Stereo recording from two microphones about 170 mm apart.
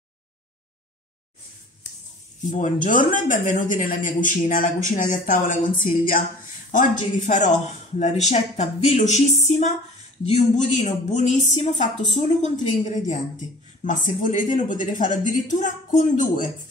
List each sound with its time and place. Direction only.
2.5 s a woman's voice: 45° left (ahead or behind)